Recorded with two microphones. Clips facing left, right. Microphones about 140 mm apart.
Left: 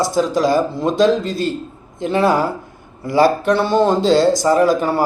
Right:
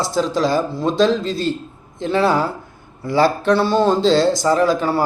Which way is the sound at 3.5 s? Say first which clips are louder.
Left 1 dB; 20° left (ahead or behind).